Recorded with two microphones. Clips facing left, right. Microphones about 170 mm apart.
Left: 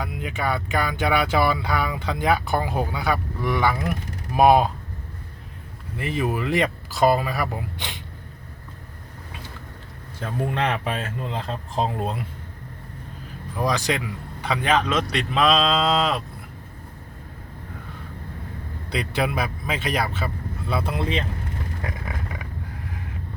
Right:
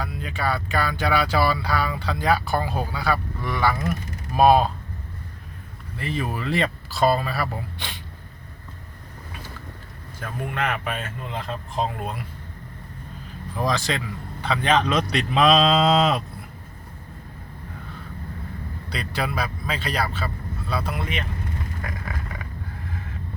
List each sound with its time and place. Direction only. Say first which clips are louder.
0.0 s speech: even; 15° left (ahead or behind)
6.0 s speech: left 3 dB; 15° left (ahead or behind)
10.2 s speech: left 3 dB; 25° left (ahead or behind)
13.6 s a man's voice: left 1 dB; 15° left (ahead or behind); by 16.2 s centre (ahead or behind)
18.9 s speech: left 4 dB; 20° left (ahead or behind)
21.8 s a sound: left 1 dB; 20° left (ahead or behind)